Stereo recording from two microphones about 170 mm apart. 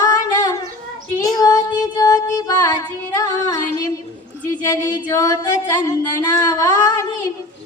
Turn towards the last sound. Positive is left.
turn(degrees=20)  # may be behind; listen again after turning